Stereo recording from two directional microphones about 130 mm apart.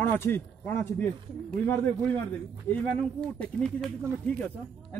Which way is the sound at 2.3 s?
10° left (ahead or behind).